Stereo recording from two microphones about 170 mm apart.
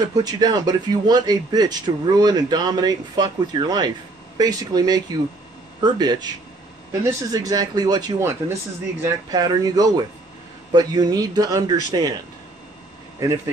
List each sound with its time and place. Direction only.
0.1 s a man's voice: 25° right (ahead or behind)